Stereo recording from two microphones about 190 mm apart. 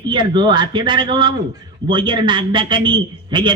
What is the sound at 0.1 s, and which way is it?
A man's voice, 25° right (ahead or behind).